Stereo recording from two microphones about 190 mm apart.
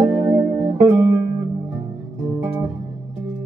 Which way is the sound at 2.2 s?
10° right (ahead or behind).